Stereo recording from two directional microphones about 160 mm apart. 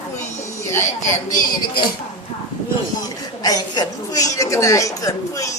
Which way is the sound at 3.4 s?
25° left (ahead or behind).